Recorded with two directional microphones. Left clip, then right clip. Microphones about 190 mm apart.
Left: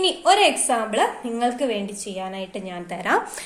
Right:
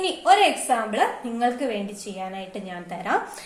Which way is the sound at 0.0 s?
35° left (ahead or behind).